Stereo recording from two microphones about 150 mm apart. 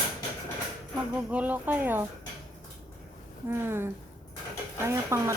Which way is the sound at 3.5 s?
15° right (ahead or behind).